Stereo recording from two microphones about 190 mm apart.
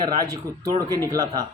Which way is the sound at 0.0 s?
15° right (ahead or behind).